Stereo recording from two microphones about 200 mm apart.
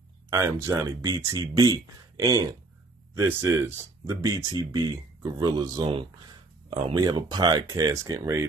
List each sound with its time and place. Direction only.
0.3 s speech: 15° right (ahead or behind)